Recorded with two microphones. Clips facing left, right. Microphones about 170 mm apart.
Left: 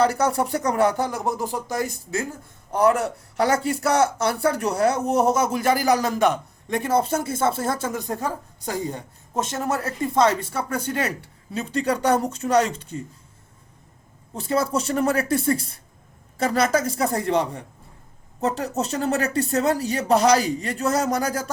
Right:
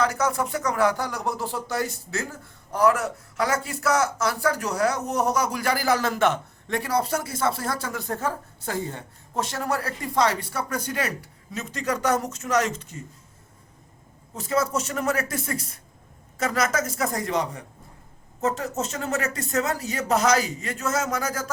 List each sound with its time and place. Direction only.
0.0 s speech: 35° left (ahead or behind); by 2.2 s 15° left (ahead or behind)
2.7 s speech: 30° left (ahead or behind)
14.3 s speech: 30° left (ahead or behind)